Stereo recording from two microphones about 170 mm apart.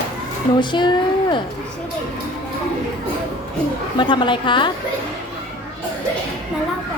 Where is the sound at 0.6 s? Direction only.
25° left (ahead or behind).